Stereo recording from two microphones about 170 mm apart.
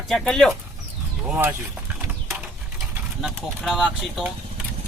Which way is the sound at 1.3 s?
10° right (ahead or behind).